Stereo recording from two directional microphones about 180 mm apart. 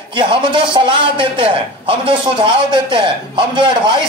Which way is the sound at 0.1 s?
25° right (ahead or behind).